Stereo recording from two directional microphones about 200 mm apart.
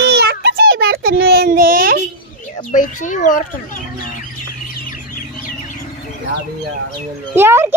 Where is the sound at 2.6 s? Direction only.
40° left (ahead or behind).